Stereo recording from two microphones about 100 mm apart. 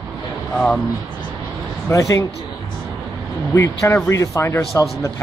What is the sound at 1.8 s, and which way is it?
Speech, 30° left (ahead or behind).